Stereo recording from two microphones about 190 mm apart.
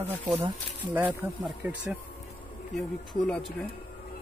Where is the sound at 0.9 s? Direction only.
10° right (ahead or behind).